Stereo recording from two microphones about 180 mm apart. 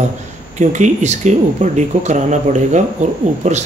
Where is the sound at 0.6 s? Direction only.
40° right (ahead or behind).